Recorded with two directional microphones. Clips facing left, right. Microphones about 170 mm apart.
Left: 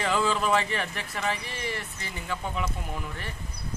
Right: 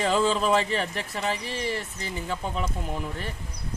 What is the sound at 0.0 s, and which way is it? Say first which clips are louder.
Speech: right 3 dB; 35° right (ahead or behind).